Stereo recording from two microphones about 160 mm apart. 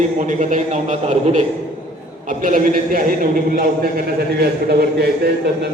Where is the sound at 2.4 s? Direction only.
60° right (ahead or behind).